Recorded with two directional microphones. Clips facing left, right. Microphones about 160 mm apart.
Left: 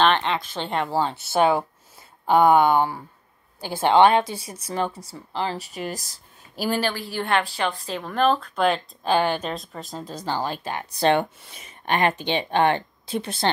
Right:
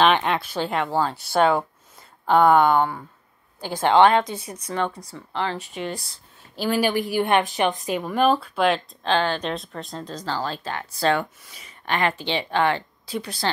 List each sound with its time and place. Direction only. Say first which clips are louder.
0.0 s speech: right 1 dB; 10° right (ahead or behind); by 3.9 s 10° left (ahead or behind)
3.9 s speech: even; 25° left (ahead or behind)
4.2 s speech: even; 10° left (ahead or behind)
5.4 s speech: even; 35° left (ahead or behind)
6.8 s speech: right 5 dB; 15° right (ahead or behind); by 13.5 s 25° left (ahead or behind)